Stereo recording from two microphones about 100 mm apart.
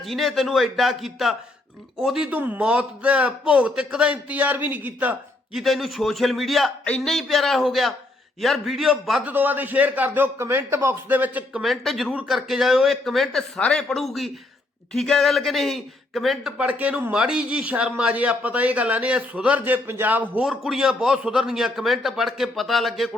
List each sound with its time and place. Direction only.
0.0 s a man's voice: centre (ahead or behind); by 4.9 s 15° right (ahead or behind)
5.5 s a man's voice: centre (ahead or behind)
9.3 s a man's voice: 20° right (ahead or behind)
11.6 s a man's voice: centre (ahead or behind); by 20.4 s 15° right (ahead or behind)
20.4 s a man's voice: 5° right (ahead or behind)